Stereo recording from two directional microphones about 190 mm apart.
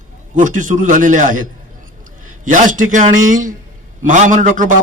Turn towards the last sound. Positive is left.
turn(degrees=-45)  # may be behind; listen again after turning